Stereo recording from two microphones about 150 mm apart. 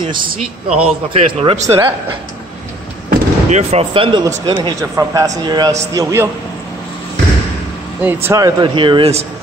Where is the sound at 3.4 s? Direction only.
50° right (ahead or behind).